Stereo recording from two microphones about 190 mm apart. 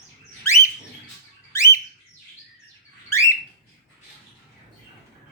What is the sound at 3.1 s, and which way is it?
Bird, 15° left (ahead or behind).